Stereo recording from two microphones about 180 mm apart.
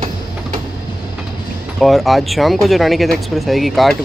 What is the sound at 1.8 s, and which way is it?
Speech, centre (ahead or behind).